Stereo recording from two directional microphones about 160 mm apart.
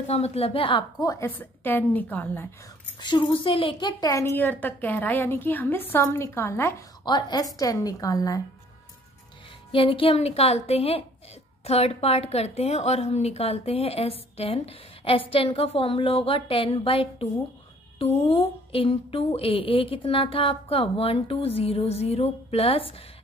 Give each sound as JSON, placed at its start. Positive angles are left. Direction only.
{"t": 0.0, "sound": "speech", "side_deg": 40}
{"t": 1.2, "sound": "a woman's voice", "side_deg": 15}
{"t": 3.0, "sound": "speech", "side_deg": 30}
{"t": 4.0, "sound": "a woman's voice", "side_deg": 20}
{"t": 9.7, "sound": "speech", "side_deg": 35}